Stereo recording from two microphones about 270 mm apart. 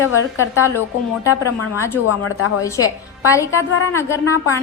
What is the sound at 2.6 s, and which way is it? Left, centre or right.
A woman's voice, centre.